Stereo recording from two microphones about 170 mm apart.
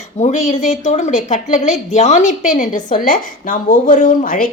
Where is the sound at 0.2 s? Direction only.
45° left (ahead or behind).